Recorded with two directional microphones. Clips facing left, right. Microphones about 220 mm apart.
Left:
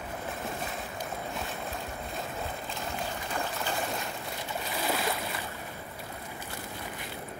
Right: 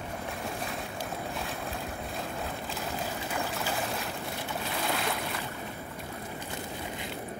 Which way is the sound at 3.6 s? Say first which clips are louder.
Even; centre (ahead or behind).